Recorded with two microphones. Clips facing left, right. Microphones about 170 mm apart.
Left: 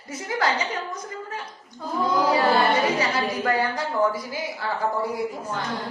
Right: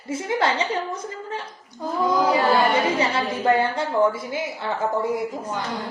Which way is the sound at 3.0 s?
25° right (ahead or behind).